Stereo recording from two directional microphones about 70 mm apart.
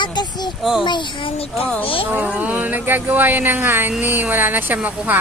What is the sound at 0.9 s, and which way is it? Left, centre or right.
Speech, left.